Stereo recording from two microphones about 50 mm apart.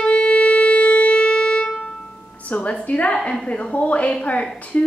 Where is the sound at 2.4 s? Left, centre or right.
Left.